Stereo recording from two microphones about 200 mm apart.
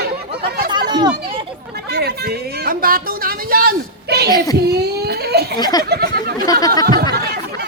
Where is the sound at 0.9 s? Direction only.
25° right (ahead or behind).